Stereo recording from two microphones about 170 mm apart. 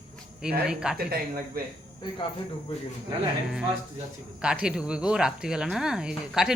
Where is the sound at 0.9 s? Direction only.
65° right (ahead or behind).